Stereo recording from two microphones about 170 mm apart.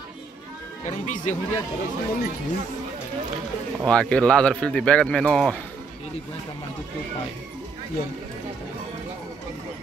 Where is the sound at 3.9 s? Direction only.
5° left (ahead or behind).